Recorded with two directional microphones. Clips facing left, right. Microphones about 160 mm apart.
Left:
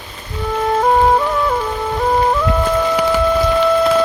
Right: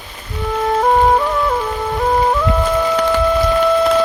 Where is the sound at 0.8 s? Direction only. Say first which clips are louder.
Even; centre (ahead or behind).